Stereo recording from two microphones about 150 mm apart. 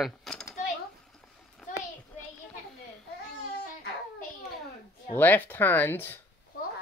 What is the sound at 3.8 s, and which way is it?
Child singing, 90° left.